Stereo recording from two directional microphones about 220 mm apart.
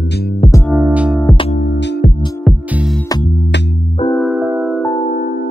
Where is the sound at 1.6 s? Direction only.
40° left (ahead or behind).